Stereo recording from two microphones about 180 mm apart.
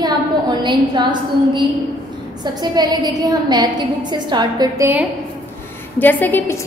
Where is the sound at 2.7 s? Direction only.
20° right (ahead or behind).